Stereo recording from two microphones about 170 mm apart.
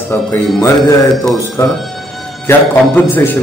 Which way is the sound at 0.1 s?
15° left (ahead or behind).